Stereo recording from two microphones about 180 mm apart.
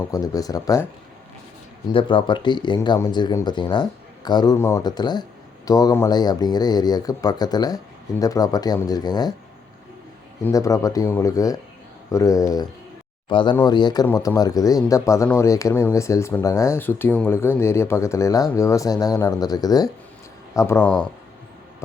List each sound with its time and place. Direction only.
0.0 s speech: 20° left (ahead or behind)
1.9 s speech: 30° left (ahead or behind)
10.4 s speech: 20° left (ahead or behind)